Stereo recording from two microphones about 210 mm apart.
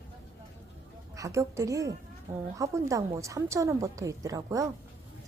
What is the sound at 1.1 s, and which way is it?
A woman's voice, 15° right (ahead or behind).